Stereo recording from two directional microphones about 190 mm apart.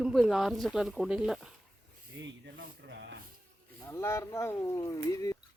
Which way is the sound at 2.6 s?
70° right (ahead or behind).